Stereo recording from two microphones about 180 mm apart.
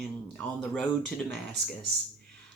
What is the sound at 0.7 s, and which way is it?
Speech, 5° left (ahead or behind).